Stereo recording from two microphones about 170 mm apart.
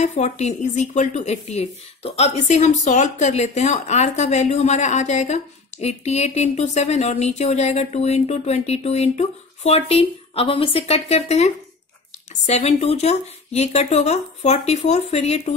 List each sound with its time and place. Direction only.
0.0 s speech: 40° left (ahead or behind)